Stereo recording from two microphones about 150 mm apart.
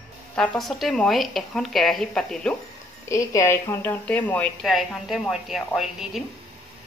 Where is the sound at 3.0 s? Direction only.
20° left (ahead or behind).